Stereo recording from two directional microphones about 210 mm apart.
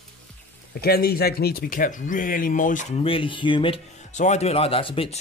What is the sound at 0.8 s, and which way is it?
Speech, 45° left (ahead or behind).